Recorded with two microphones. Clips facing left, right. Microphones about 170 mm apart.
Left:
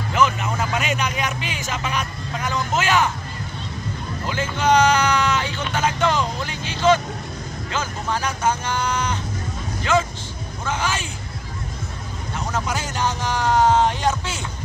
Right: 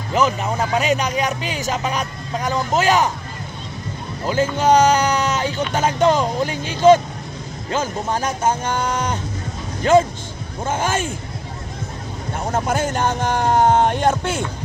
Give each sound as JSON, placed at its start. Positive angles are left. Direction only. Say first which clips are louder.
{"t": 0.1, "sound": "speech", "louder": "right 2 dB", "side_deg": -35}
{"t": 4.3, "sound": "speech", "louder": "right 4 dB", "side_deg": -40}
{"t": 12.4, "sound": "speech", "louder": "right 5 dB", "side_deg": -50}